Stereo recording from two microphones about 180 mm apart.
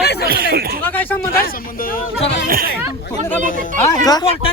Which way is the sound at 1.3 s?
55° left (ahead or behind).